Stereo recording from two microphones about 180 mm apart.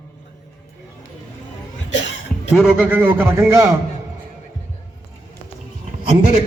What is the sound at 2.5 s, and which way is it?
A man's voice, 5° right (ahead or behind).